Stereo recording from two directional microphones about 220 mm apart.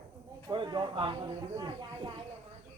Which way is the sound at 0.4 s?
20° right (ahead or behind).